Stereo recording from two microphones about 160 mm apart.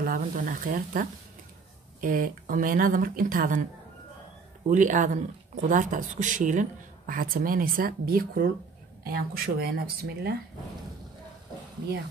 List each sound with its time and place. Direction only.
0.0 s speech: 60° right (ahead or behind)
4.6 s speech: 50° right (ahead or behind); by 10.3 s 80° right